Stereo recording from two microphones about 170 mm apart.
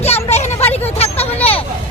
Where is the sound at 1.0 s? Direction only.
35° left (ahead or behind).